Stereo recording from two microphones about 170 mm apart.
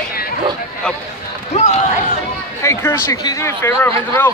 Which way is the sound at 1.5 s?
45° left (ahead or behind).